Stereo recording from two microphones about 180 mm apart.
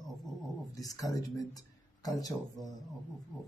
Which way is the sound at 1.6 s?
20° left (ahead or behind).